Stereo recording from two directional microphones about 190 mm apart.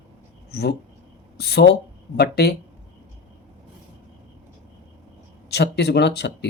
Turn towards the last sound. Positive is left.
turn(degrees=60)  # may be behind; listen again after turning